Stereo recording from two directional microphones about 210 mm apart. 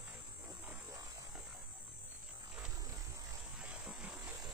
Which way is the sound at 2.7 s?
15° right (ahead or behind).